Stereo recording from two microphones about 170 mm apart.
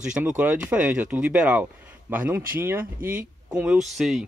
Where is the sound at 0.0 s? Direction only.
5° right (ahead or behind).